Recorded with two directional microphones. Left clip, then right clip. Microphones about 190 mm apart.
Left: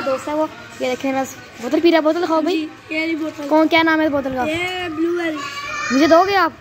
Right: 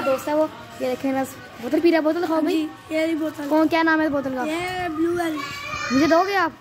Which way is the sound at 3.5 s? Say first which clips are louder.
Left 5 dB; centre (ahead or behind).